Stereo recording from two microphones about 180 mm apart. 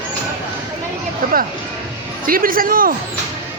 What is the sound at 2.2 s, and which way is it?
Speech, 50° right (ahead or behind).